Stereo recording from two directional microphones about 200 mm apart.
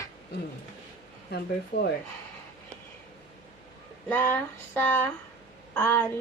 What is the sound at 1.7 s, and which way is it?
Speech, 45° left (ahead or behind).